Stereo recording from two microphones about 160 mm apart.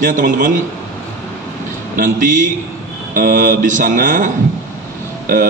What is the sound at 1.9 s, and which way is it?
A man's voice, 55° right (ahead or behind).